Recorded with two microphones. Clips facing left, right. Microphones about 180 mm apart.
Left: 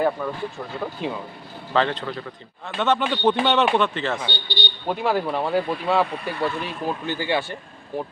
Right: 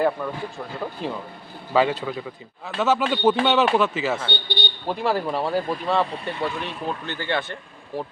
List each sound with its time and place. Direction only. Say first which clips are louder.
0.2 s speech: left 1 dB; centre (ahead or behind)
1.7 s a man's voice: right 2 dB; 10° right (ahead or behind)
4.3 s speech: right 2 dB; 55° right (ahead or behind)
4.9 s speech: left 1 dB; centre (ahead or behind)